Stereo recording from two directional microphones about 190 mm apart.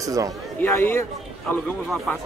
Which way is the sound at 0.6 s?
10° left (ahead or behind).